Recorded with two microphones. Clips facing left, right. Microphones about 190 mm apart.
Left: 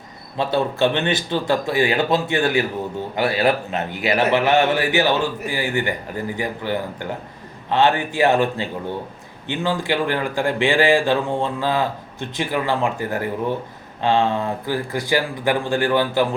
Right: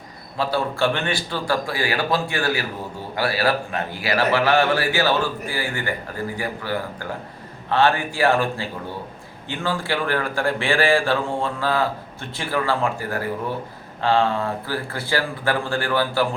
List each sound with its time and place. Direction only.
0.3 s speech: 20° left (ahead or behind)